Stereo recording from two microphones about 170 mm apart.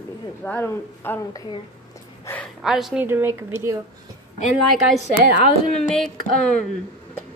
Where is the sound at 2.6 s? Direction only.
5° right (ahead or behind).